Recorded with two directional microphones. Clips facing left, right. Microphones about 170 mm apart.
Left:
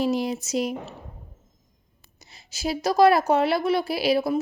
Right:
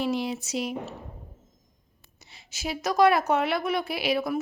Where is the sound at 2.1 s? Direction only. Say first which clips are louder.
Left 2 dB; 40° left (ahead or behind).